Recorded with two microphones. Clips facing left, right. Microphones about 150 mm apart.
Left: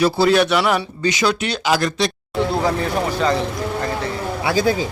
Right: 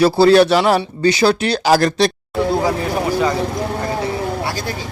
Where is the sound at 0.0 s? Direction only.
30° right (ahead or behind).